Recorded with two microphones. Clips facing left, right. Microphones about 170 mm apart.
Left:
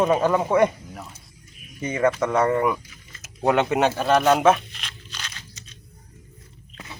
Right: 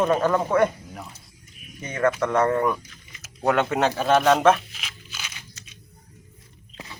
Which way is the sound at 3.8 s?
Centre (ahead or behind).